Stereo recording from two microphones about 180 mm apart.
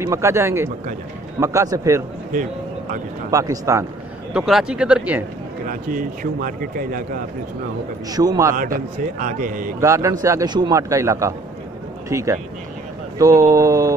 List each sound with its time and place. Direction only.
0.0 s a man's voice: 15° right (ahead or behind)
3.3 s a man's voice: 15° right (ahead or behind)
4.3 s speech: 5° right (ahead or behind)
5.7 s speech: 50° right (ahead or behind)
8.1 s a man's voice: 20° right (ahead or behind)
8.5 s speech: 50° right (ahead or behind)
9.8 s a man's voice: 15° right (ahead or behind)